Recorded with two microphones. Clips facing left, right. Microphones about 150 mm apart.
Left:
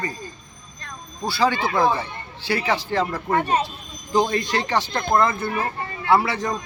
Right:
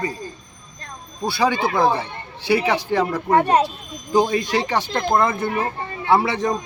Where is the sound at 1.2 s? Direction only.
20° right (ahead or behind).